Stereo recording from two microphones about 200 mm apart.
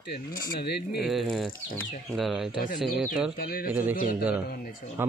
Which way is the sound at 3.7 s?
10° right (ahead or behind).